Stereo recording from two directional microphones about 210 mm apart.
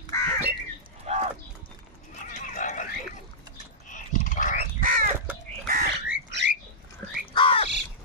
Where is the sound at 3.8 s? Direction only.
40° left (ahead or behind).